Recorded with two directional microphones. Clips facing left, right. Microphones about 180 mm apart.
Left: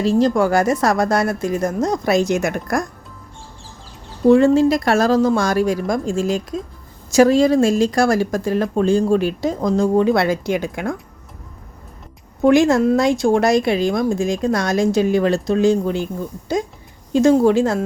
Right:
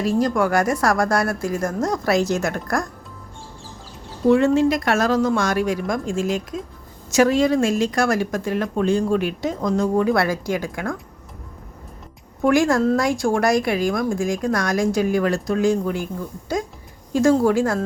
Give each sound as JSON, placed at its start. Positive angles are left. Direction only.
{"t": 0.0, "sound": "speech", "side_deg": 25}
{"t": 4.3, "sound": "speech", "side_deg": 35}
{"t": 12.4, "sound": "speech", "side_deg": 20}
{"t": 17.1, "sound": "speech", "side_deg": 20}